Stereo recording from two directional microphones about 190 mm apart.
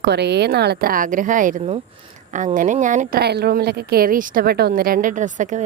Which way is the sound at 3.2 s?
60° right (ahead or behind).